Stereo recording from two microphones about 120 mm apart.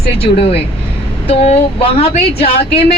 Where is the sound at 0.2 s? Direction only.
50° left (ahead or behind).